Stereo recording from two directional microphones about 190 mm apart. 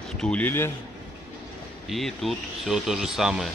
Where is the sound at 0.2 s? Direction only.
5° left (ahead or behind).